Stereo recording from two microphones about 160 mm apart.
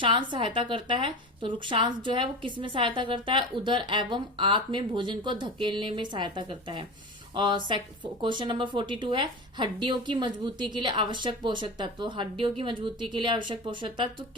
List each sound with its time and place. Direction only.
0.0 s a woman's voice: 30° right (ahead or behind)